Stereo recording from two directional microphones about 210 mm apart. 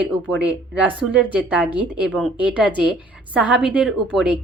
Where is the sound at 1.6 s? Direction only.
20° left (ahead or behind).